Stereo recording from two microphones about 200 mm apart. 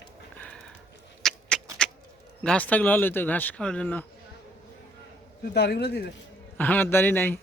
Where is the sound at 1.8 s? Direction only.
5° left (ahead or behind).